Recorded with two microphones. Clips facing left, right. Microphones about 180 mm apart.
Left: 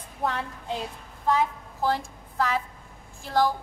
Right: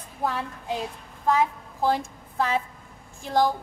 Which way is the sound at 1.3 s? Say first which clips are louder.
Right 1 dB; 15° right (ahead or behind).